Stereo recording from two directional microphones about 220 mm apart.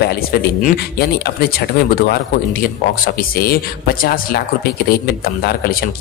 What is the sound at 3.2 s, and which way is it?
Speech, 40° left (ahead or behind).